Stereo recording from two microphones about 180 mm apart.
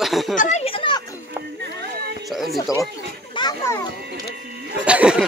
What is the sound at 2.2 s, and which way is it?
Speech, centre (ahead or behind).